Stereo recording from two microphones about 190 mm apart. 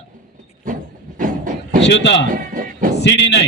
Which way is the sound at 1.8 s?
65° left (ahead or behind).